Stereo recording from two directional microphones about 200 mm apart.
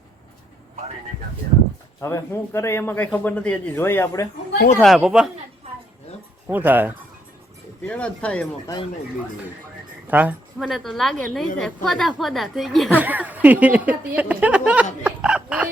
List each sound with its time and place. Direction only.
2.0 s a man's voice: 15° left (ahead or behind)
4.5 s speech: 50° left (ahead or behind)
4.8 s a woman's voice: centre (ahead or behind)
6.5 s a woman's voice: 10° right (ahead or behind)
7.8 s a man's voice: 5° left (ahead or behind)
10.1 s a woman's voice: 10° right (ahead or behind)
15.0 s a sound: 5° right (ahead or behind)